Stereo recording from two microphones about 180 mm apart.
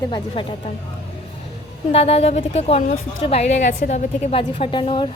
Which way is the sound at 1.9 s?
35° left (ahead or behind).